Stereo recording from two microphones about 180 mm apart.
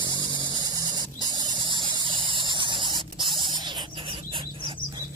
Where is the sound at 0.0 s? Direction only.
25° right (ahead or behind).